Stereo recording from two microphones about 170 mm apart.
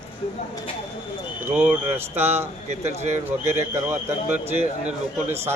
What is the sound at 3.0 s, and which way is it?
Speech, 45° right (ahead or behind).